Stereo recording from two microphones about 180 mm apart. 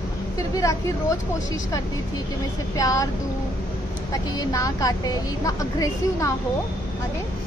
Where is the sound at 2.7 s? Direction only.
20° left (ahead or behind).